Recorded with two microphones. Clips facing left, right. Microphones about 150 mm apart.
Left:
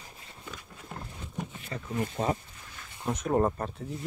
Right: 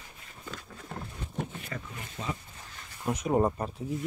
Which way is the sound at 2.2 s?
50° left (ahead or behind).